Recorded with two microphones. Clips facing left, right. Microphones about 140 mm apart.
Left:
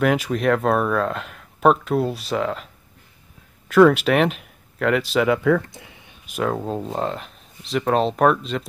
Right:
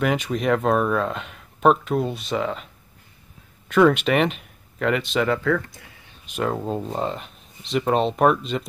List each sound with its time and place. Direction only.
0.0 s speech: centre (ahead or behind)
5.5 s speech: 20° left (ahead or behind)
6.2 s speech: centre (ahead or behind)